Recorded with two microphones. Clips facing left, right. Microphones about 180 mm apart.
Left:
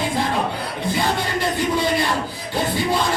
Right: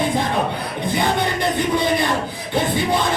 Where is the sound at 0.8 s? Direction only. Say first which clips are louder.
Right 2 dB; 20° right (ahead or behind).